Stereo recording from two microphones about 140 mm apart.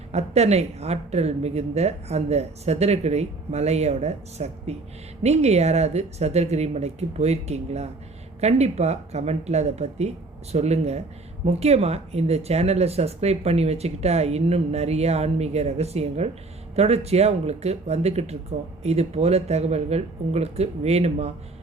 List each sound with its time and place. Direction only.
0.1 s speech: 50° right (ahead or behind)